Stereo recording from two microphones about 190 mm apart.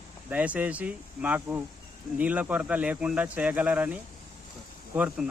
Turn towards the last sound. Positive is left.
turn(degrees=-5)  # may be behind; listen again after turning